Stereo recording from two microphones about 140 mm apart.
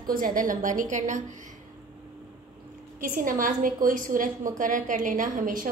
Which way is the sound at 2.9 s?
80° right.